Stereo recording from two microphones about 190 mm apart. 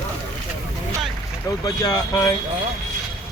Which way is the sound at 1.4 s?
20° left (ahead or behind).